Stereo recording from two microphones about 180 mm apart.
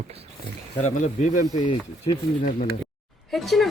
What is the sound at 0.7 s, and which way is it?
Speech, 40° left (ahead or behind).